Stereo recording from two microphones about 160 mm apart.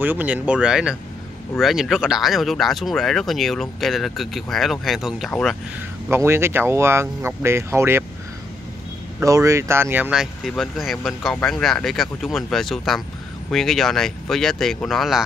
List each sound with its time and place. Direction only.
0.0 s speech: 10° right (ahead or behind)
6.0 s speech: 15° right (ahead or behind)
9.2 s speech: 20° right (ahead or behind)
10.4 s speech: centre (ahead or behind)